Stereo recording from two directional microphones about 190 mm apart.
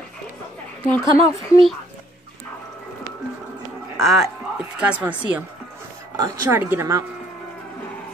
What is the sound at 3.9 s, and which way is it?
A woman's voice, centre (ahead or behind).